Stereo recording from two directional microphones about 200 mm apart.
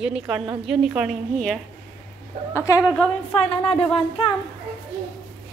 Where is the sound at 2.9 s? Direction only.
5° left (ahead or behind).